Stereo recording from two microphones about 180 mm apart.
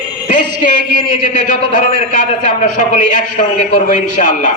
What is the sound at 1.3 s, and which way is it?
A man's voice, 45° left (ahead or behind).